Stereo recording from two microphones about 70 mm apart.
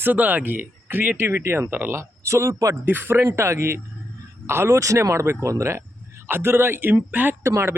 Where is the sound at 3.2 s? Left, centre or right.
Right.